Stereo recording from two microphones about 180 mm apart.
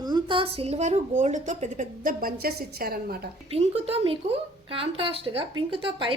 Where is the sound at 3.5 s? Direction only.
35° right (ahead or behind).